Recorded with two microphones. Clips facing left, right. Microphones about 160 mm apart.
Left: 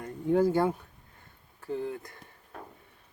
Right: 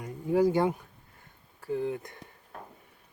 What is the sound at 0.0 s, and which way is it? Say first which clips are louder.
Speech: even; 10° right (ahead or behind).